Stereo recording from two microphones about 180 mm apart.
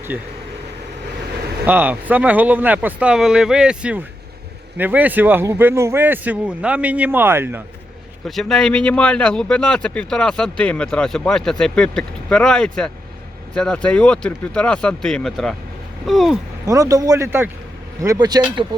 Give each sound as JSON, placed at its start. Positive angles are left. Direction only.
{"t": 1.6, "sound": "speech", "side_deg": -10}
{"t": 8.4, "sound": "speech", "side_deg": 0}
{"t": 16.6, "sound": "a man's voice", "side_deg": -20}